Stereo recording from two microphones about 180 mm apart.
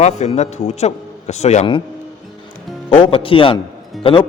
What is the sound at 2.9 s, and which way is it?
Speech, 30° left (ahead or behind).